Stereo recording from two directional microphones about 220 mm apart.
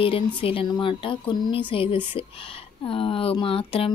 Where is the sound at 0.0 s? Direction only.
25° left (ahead or behind).